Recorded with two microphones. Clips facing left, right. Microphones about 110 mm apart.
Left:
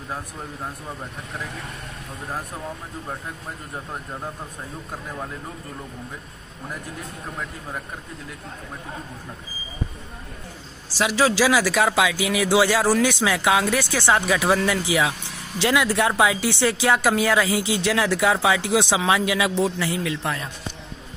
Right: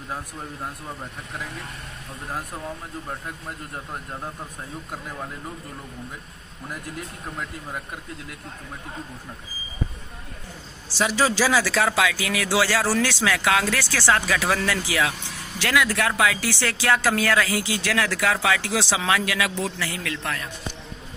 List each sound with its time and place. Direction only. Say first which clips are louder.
3.7 s speech: left 3 dB; 5° left (ahead or behind)
11.0 s speech: left 2 dB; 5° left (ahead or behind); by 20.4 s 20° left (ahead or behind)